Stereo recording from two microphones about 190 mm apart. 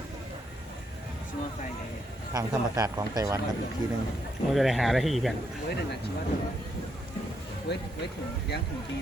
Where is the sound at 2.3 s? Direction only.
20° right (ahead or behind).